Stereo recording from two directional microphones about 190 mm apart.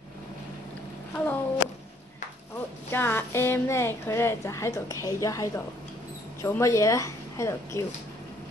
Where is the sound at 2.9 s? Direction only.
10° left (ahead or behind).